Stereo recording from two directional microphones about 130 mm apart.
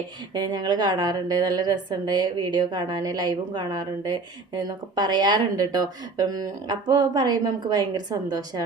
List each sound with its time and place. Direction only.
0.3 s a woman's voice: 30° right (ahead or behind)